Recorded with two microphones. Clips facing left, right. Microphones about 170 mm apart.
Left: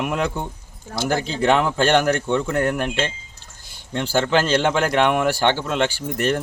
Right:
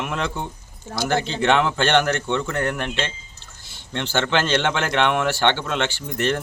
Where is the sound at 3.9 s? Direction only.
10° left (ahead or behind).